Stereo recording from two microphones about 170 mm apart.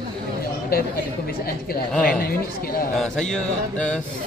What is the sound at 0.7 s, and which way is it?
Speech, 60° left (ahead or behind).